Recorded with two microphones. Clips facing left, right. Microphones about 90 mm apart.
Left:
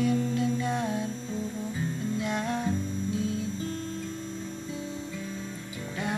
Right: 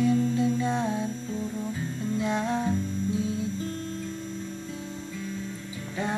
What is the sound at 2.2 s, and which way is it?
Music, centre (ahead or behind).